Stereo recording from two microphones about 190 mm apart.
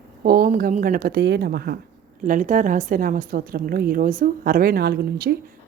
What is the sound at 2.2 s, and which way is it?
A woman's voice, 45° right (ahead or behind).